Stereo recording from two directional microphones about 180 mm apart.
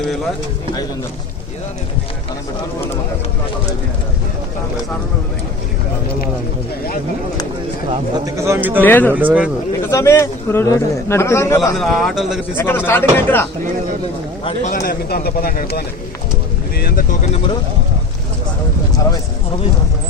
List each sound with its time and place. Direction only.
7.9 s a man's voice: 30° right (ahead or behind)
8.4 s speech: 15° right (ahead or behind)
8.8 s a man's voice: 10° left (ahead or behind)
9.1 s speech: 10° right (ahead or behind)
9.9 s a man's voice: 15° left (ahead or behind)
11.8 s a man's voice: centre (ahead or behind)
12.5 s a man's voice: 10° left (ahead or behind)
14.7 s speech: 55° left (ahead or behind)